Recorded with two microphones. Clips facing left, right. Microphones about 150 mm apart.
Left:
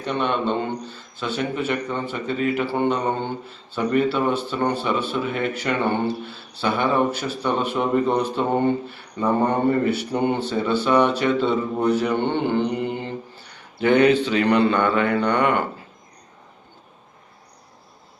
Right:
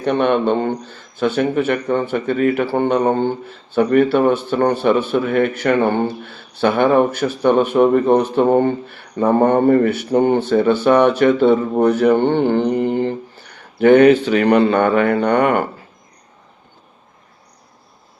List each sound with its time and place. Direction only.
0.0 s a man's voice: 55° right (ahead or behind)